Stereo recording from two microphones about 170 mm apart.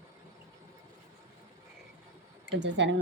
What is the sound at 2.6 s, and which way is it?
Speech, 90° right.